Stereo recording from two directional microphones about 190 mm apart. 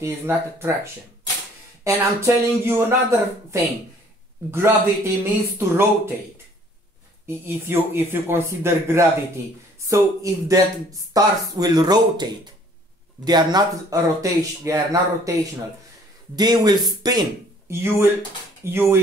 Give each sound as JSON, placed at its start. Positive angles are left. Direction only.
{"t": 0.0, "sound": "speech", "side_deg": -15}
{"t": 1.9, "sound": "speech", "side_deg": -15}
{"t": 7.2, "sound": "speech", "side_deg": -10}
{"t": 16.3, "sound": "speech", "side_deg": -20}